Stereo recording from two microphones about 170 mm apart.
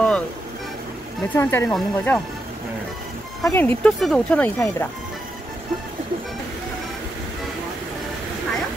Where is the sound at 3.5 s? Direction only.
10° left (ahead or behind).